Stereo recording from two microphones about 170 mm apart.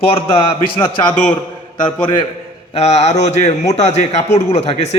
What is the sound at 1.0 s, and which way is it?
Speech, 5° left (ahead or behind).